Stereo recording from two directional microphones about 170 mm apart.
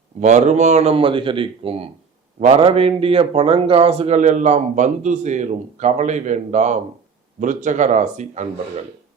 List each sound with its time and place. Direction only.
0.2 s a man's voice: 40° right (ahead or behind)